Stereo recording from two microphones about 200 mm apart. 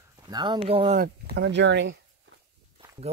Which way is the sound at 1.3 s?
60° right (ahead or behind).